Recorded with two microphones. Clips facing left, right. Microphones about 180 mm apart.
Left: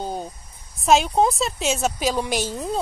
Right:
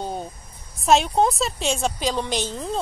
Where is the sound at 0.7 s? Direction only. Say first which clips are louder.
Left 1 dB; centre (ahead or behind).